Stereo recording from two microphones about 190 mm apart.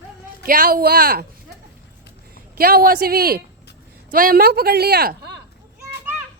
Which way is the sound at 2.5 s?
50° right (ahead or behind).